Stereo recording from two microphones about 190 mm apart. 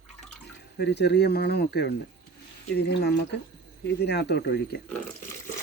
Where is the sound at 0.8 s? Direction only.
65° left (ahead or behind).